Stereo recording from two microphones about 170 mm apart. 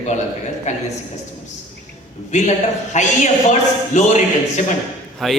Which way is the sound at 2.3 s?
45° left (ahead or behind).